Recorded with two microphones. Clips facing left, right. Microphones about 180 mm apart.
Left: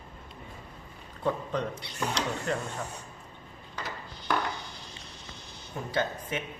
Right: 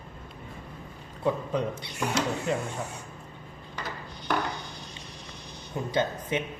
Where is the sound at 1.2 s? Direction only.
10° right (ahead or behind).